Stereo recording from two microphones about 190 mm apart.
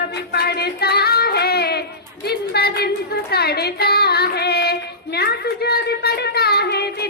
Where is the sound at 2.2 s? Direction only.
60° left (ahead or behind).